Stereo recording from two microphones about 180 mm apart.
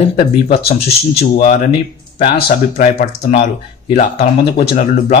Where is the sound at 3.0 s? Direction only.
40° left (ahead or behind).